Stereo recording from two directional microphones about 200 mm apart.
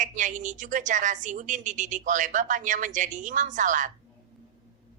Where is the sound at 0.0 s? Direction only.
40° right (ahead or behind).